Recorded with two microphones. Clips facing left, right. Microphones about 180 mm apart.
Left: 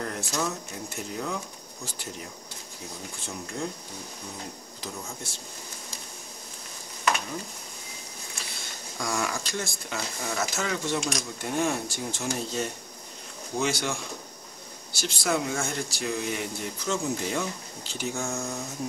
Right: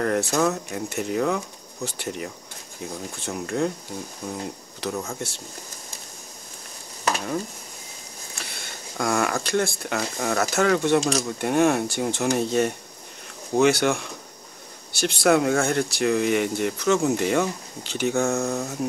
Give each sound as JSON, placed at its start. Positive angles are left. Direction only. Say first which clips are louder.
{"t": 0.0, "sound": "speech", "louder": "right 9 dB", "side_deg": -65}
{"t": 3.3, "sound": "speech", "louder": "right 9 dB", "side_deg": -65}
{"t": 4.7, "sound": "speech", "louder": "right 10 dB", "side_deg": -70}
{"t": 8.9, "sound": "speech", "louder": "right 7 dB", "side_deg": -60}
{"t": 11.0, "sound": "speech", "louder": "right 8 dB", "side_deg": -30}
{"t": 11.2, "sound": "speech", "louder": "right 8 dB", "side_deg": -65}